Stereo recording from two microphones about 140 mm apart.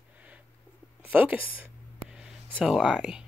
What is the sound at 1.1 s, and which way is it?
Speech, 10° right (ahead or behind).